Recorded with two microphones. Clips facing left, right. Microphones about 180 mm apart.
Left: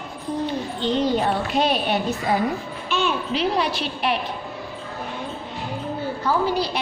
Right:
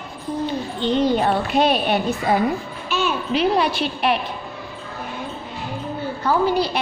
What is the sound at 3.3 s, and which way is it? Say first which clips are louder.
Speech: right 6 dB; 60° right (ahead or behind).